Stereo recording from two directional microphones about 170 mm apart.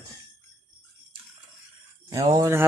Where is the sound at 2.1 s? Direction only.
20° right (ahead or behind).